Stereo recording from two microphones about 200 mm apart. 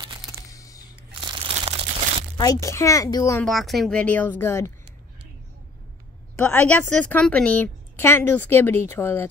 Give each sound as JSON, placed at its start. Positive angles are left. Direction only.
{"t": 0.5, "sound": "a sound", "side_deg": 15}
{"t": 1.3, "sound": "crumpling", "side_deg": -30}
{"t": 2.3, "sound": "a woman's voice", "side_deg": 20}
{"t": 3.4, "sound": "a woman's voice", "side_deg": 0}
{"t": 6.3, "sound": "a woman's voice", "side_deg": 5}